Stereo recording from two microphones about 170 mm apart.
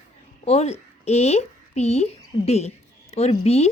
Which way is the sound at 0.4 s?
40° left (ahead or behind).